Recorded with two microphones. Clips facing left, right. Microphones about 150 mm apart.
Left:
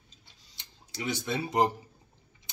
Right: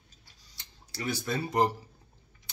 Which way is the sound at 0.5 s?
20° left (ahead or behind).